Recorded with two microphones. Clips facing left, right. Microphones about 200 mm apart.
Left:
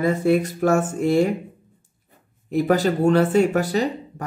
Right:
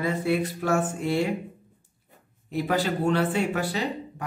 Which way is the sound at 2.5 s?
45° left (ahead or behind).